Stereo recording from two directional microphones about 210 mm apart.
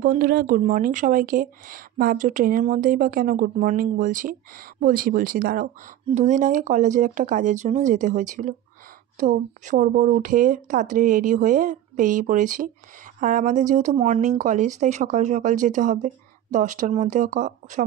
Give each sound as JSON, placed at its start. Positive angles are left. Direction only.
{"t": 0.0, "sound": "speech", "side_deg": -45}